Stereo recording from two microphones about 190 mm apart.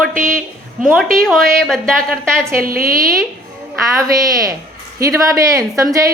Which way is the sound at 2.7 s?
50° right (ahead or behind).